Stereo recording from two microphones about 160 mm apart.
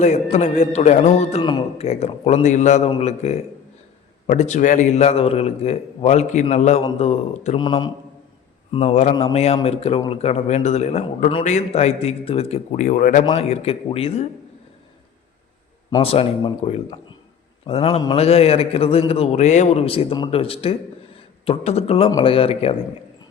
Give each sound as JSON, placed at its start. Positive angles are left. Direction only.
{"t": 0.0, "sound": "a man's voice", "side_deg": 45}
{"t": 16.0, "sound": "a man's voice", "side_deg": 35}